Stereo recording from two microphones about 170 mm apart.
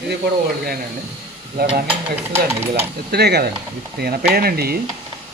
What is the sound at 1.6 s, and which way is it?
Stir, 30° right (ahead or behind).